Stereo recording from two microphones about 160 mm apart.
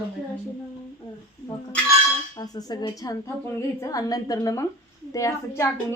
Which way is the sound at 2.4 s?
25° left (ahead or behind).